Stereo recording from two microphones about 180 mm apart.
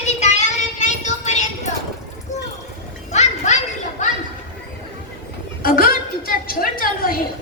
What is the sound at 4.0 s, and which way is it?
Chatter, 40° left (ahead or behind).